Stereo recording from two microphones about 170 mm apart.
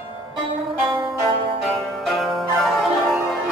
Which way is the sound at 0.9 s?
30° right (ahead or behind).